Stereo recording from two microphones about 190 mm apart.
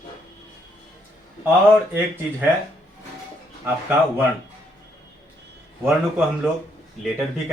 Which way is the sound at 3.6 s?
10° right (ahead or behind).